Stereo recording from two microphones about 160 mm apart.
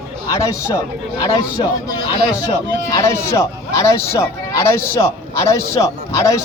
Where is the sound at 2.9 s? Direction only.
20° left (ahead or behind).